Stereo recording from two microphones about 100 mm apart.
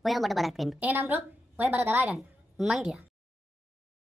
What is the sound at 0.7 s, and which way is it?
A woman's voice, 15° right (ahead or behind).